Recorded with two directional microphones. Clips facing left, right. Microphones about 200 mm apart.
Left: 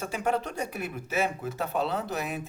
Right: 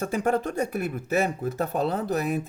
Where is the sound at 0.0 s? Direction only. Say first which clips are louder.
Right 4 dB; 50° right (ahead or behind).